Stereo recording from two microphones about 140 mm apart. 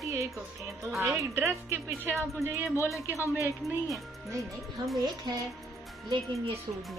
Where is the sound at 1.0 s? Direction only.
20° right (ahead or behind).